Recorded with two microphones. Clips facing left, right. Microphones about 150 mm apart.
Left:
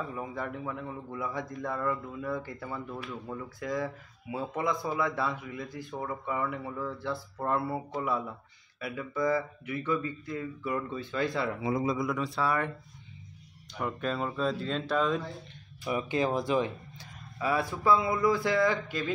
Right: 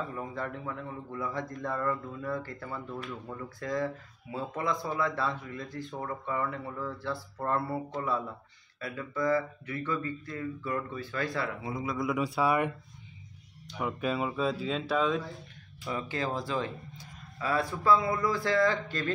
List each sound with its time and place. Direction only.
0.1 s a man's voice: 10° left (ahead or behind)
12.0 s speech: 10° right (ahead or behind)
13.7 s speech: 5° right (ahead or behind)
15.8 s a man's voice: 15° left (ahead or behind)